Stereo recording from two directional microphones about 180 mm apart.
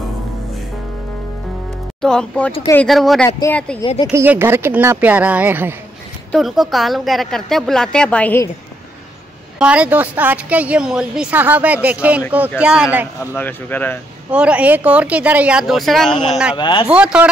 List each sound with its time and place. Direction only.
2.0 s a woman's voice: 5° left (ahead or behind)
3.3 s speech: 20° left (ahead or behind)
4.1 s a woman's voice: 15° right (ahead or behind); by 8.5 s 10° left (ahead or behind)
9.6 s a woman's voice: 5° right (ahead or behind)
13.3 s speech: 10° left (ahead or behind)
14.3 s a woman's voice: 5° right (ahead or behind)
16.5 s speech: 25° left (ahead or behind)
16.8 s a woman's voice: 5° right (ahead or behind)